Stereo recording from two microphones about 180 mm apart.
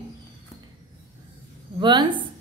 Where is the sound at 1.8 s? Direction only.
25° right (ahead or behind).